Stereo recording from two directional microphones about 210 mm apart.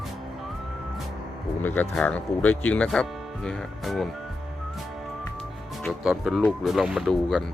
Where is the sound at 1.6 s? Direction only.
10° left (ahead or behind).